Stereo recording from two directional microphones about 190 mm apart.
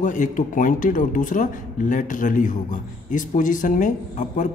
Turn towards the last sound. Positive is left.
turn(degrees=40)  # may be behind; listen again after turning